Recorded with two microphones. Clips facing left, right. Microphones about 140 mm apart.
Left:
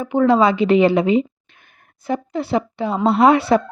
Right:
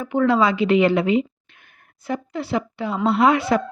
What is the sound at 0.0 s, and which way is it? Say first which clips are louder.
A woman's voice: left 3 dB; 20° left (ahead or behind).